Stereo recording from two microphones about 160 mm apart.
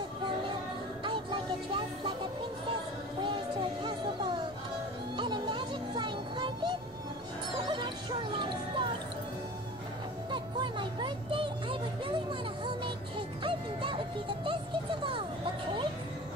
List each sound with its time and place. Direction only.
1.0 s music: 30° right (ahead or behind)
3.8 s music: 30° right (ahead or behind)
10.3 s music: 30° right (ahead or behind)